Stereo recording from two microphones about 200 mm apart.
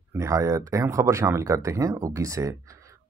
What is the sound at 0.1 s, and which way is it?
Speech, 15° right (ahead or behind).